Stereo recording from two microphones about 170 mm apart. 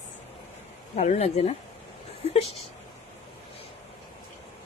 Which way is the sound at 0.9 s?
45° left (ahead or behind).